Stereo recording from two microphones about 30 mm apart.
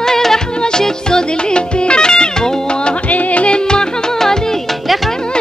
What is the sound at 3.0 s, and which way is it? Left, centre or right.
Music, left.